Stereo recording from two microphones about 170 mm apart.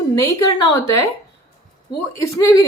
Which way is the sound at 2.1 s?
20° left (ahead or behind).